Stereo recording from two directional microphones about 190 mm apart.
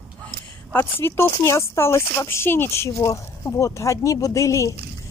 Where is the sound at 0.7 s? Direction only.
15° left (ahead or behind).